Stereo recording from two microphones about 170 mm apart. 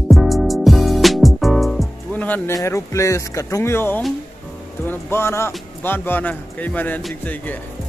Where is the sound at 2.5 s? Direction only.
20° left (ahead or behind).